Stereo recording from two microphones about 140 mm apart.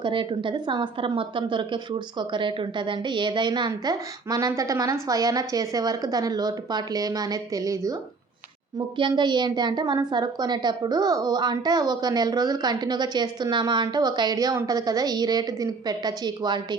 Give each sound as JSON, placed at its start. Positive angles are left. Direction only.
{"t": 0.0, "sound": "a woman's voice", "side_deg": -35}
{"t": 9.0, "sound": "a woman's voice", "side_deg": -35}